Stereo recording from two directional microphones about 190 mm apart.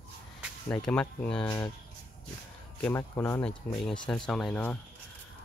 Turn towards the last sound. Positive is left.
turn(degrees=5)  # may be behind; listen again after turning